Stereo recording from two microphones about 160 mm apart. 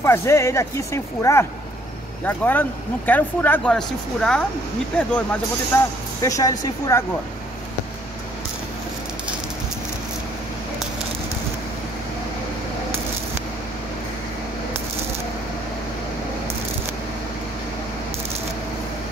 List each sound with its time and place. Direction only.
0.0 s speech: 15° left (ahead or behind)
5.8 s speech: 20° left (ahead or behind)